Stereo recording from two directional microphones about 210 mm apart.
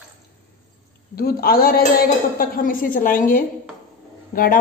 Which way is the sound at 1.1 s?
45° left (ahead or behind).